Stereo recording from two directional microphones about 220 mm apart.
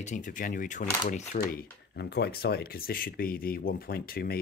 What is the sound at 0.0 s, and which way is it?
Speech, 35° left (ahead or behind).